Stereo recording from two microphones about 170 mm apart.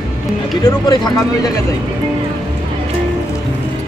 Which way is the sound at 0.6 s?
20° left (ahead or behind).